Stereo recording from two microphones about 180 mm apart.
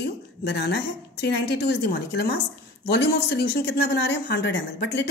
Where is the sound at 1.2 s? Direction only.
70° left (ahead or behind).